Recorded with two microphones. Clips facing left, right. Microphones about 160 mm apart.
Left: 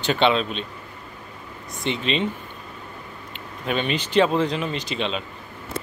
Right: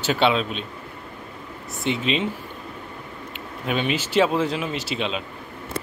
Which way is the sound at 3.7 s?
5° right (ahead or behind).